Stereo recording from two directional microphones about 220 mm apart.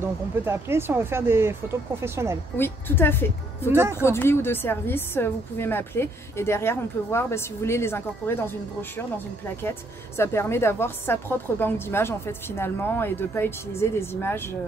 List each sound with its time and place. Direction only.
0.0 s speech: 10° right (ahead or behind)
2.5 s a woman's voice: 10° left (ahead or behind)
10.1 s a woman's voice: 10° left (ahead or behind)